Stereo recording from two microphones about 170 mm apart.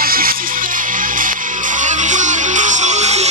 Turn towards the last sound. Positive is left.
turn(degrees=-40)  # may be behind; listen again after turning